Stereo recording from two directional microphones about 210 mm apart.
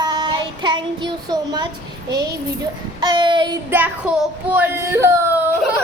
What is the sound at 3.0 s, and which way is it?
Child singing, 20° right (ahead or behind).